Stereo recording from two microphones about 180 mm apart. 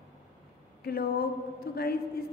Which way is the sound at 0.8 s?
60° left (ahead or behind).